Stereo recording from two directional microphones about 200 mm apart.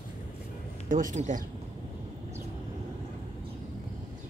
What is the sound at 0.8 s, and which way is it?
Speech, 40° right (ahead or behind).